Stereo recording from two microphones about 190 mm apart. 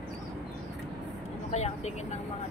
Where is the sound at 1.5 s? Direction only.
35° left (ahead or behind).